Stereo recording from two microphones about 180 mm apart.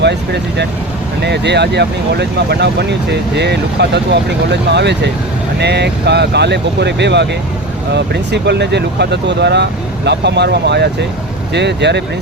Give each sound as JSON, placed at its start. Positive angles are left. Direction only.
{"t": 0.0, "sound": "speech", "side_deg": -70}